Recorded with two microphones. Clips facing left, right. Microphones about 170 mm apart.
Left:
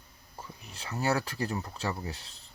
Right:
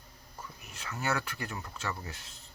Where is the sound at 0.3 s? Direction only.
30° left (ahead or behind).